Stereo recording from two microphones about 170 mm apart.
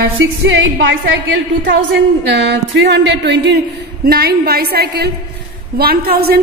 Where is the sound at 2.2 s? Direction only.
85° right.